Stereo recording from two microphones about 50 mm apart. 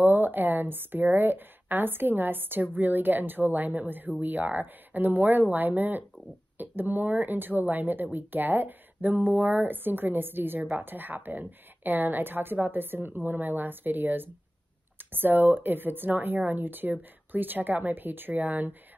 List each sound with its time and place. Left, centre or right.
0.0 s speech: right